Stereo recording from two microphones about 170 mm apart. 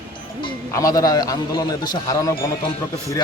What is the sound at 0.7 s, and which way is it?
A man's voice, 20° left (ahead or behind).